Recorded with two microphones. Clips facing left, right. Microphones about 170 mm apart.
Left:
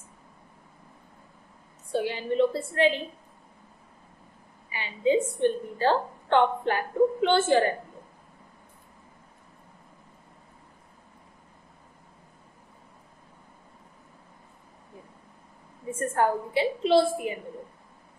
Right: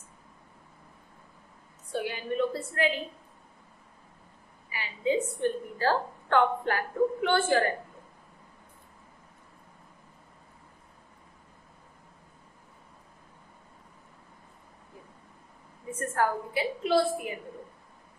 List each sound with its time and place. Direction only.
1.9 s a woman's voice: 25° left (ahead or behind)
4.6 s a woman's voice: 25° left (ahead or behind)
15.9 s a woman's voice: 25° left (ahead or behind)